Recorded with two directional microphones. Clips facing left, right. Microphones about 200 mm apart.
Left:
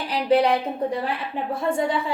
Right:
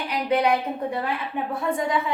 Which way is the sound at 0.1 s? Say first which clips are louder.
Left 3 dB; 30° left (ahead or behind).